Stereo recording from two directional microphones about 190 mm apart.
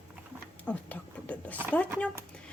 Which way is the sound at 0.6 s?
10° left (ahead or behind).